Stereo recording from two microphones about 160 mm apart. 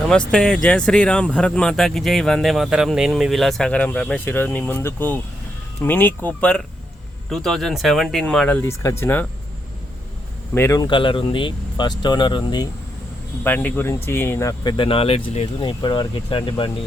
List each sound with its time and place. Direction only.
0.0 s speech: 5° left (ahead or behind)
8.8 s speech: 20° left (ahead or behind)
10.5 s speech: 20° left (ahead or behind)
13.4 s speech: 10° left (ahead or behind); by 16.7 s 30° left (ahead or behind)